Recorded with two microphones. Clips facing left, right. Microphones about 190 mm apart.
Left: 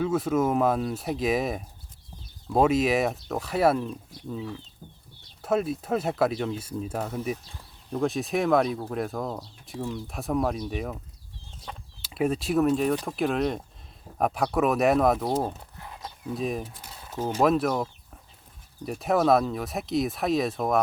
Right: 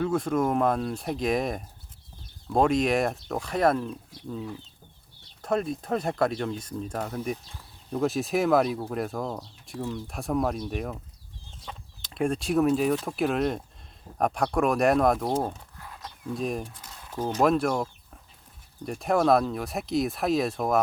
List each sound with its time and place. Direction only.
0.0 s speech: 5° left (ahead or behind)
12.0 s speech: 5° left (ahead or behind)
15.8 s a sound: 20° left (ahead or behind)
16.2 s speech: centre (ahead or behind)
18.9 s speech: centre (ahead or behind)